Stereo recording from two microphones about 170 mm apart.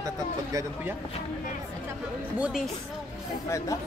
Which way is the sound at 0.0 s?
20° right (ahead or behind).